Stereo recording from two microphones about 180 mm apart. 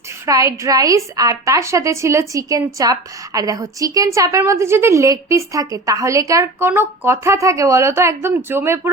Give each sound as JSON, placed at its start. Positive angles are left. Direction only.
{"t": 0.3, "sound": "a woman's voice", "side_deg": -15}